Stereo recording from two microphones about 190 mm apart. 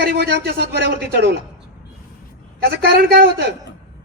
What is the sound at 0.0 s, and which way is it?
Speech, 60° right (ahead or behind).